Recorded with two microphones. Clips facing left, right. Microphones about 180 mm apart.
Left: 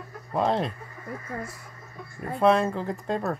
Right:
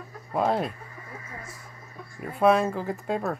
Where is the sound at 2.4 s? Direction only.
5° right (ahead or behind).